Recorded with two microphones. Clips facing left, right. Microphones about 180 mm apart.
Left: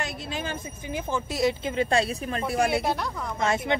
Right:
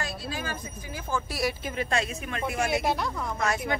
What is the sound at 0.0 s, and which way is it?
A woman's voice, 20° left (ahead or behind).